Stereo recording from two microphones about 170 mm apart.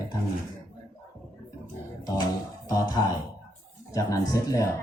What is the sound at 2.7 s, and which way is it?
Speech, 20° left (ahead or behind).